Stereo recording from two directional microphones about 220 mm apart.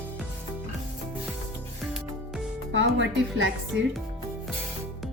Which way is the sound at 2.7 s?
60° right (ahead or behind).